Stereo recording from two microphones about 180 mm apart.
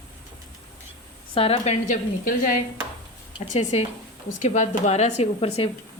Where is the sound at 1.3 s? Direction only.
35° left (ahead or behind).